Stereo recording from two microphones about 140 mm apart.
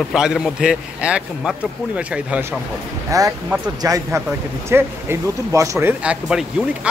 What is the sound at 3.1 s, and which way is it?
Speech, 25° right (ahead or behind).